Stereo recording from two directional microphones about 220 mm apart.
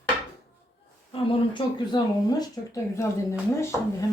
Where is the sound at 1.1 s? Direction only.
25° left (ahead or behind).